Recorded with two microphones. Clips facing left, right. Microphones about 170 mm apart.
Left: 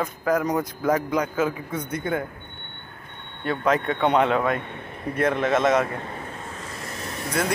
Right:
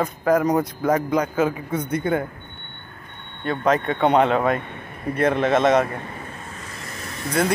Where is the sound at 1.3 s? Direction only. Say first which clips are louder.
Right 3 dB; 60° right (ahead or behind).